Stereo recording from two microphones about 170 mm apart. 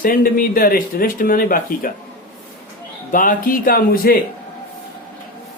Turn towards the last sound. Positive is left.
turn(degrees=60)  # may be behind; listen again after turning